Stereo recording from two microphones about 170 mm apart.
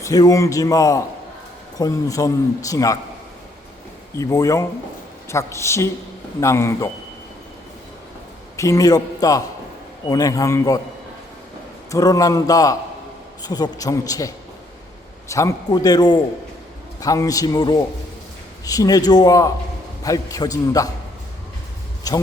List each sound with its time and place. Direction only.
0.0 s a man's voice: 20° left (ahead or behind)
4.2 s a man's voice: 20° left (ahead or behind)
8.5 s a man's voice: 20° left (ahead or behind)
11.9 s a man's voice: 20° left (ahead or behind)
22.1 s a man's voice: 20° left (ahead or behind)